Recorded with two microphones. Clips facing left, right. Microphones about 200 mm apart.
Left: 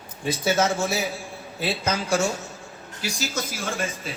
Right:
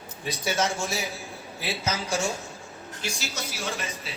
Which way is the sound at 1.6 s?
55° left (ahead or behind).